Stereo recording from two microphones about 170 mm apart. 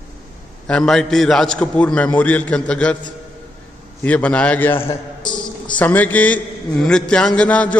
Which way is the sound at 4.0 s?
10° left (ahead or behind).